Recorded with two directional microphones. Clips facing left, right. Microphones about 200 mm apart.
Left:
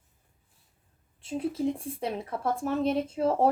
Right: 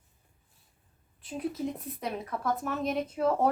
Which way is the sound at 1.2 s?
25° left (ahead or behind).